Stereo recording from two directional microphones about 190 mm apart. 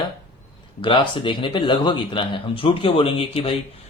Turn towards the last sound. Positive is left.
turn(degrees=30)  # may be behind; listen again after turning